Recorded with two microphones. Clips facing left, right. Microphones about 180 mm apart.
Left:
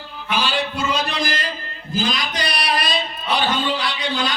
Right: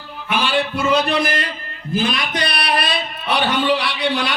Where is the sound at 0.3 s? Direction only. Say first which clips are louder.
Right 3 dB; 60° right (ahead or behind).